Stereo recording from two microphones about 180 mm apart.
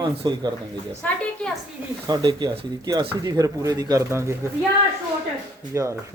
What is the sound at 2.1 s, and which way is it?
Speech, 25° right (ahead or behind).